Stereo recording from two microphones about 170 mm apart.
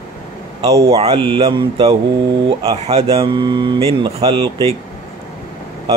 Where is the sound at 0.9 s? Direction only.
35° right (ahead or behind).